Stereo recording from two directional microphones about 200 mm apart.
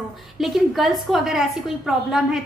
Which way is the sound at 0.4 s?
Centre (ahead or behind).